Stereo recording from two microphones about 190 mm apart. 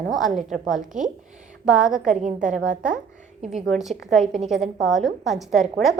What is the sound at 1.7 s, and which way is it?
Speech, 5° right (ahead or behind).